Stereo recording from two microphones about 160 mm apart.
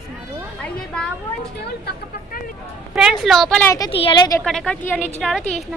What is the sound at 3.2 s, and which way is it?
Speech, centre (ahead or behind).